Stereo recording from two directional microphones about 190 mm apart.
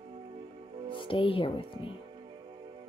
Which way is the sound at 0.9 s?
25° left (ahead or behind).